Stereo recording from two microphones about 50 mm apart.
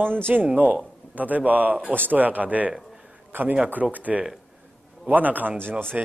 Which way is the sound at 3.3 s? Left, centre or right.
Right.